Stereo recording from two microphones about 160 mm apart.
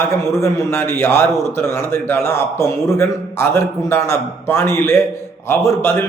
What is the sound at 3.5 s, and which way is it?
A man's voice, 15° left (ahead or behind).